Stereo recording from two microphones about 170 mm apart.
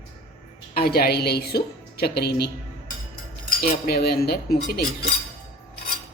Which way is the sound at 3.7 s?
65° left (ahead or behind).